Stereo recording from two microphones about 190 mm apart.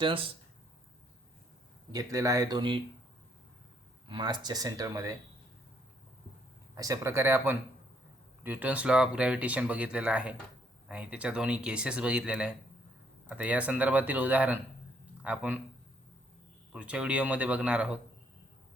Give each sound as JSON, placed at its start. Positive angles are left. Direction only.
{"t": 1.9, "sound": "speech", "side_deg": -20}
{"t": 4.1, "sound": "speech", "side_deg": -25}
{"t": 6.7, "sound": "speech", "side_deg": -20}
{"t": 16.7, "sound": "speech", "side_deg": -5}